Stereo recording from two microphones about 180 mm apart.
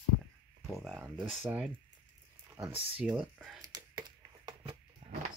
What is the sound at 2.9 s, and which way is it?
Speech, 5° right (ahead or behind).